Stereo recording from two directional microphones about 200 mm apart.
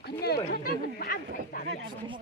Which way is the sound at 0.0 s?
55° left (ahead or behind).